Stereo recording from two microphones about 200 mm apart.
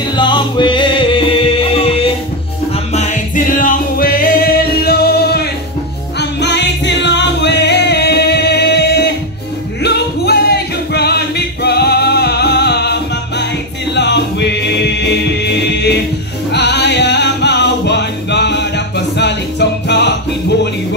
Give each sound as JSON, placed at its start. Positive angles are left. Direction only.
{"t": 0.1, "sound": "music", "side_deg": 20}